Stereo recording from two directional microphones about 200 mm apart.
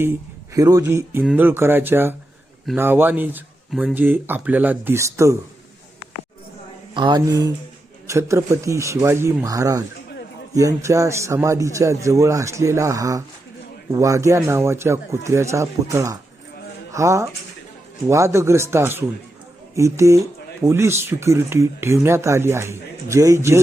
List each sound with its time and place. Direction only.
0.0 s speech: 15° right (ahead or behind)
6.9 s speech: 25° right (ahead or behind)